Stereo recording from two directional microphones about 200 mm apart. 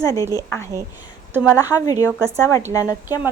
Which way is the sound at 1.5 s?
15° left (ahead or behind).